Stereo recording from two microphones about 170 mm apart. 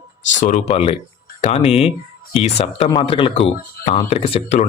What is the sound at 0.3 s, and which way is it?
Speech, 45° left (ahead or behind).